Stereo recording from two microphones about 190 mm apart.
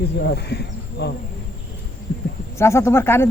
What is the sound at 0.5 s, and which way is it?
Insect, 60° left (ahead or behind).